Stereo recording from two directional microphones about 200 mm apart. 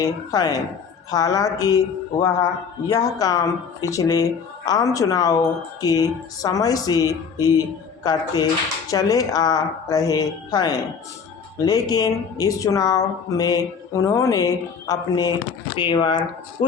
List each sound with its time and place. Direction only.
0.0 s speech: 20° left (ahead or behind)
2.9 s speech: 20° left (ahead or behind)